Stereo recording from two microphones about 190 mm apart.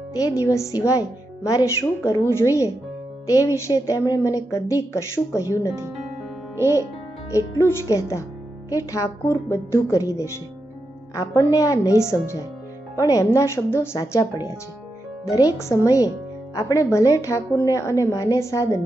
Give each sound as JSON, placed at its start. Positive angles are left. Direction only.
{"t": 0.2, "sound": "a woman's voice", "side_deg": 15}
{"t": 6.5, "sound": "speech", "side_deg": -15}
{"t": 7.3, "sound": "a woman's voice", "side_deg": 15}
{"t": 15.2, "sound": "a woman's voice", "side_deg": 20}